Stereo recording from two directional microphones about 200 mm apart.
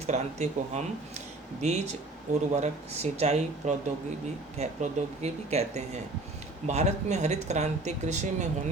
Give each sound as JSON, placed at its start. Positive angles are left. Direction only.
{"t": 0.1, "sound": "speech", "side_deg": -35}